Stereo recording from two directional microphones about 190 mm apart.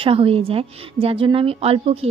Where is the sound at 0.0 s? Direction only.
30° right (ahead or behind).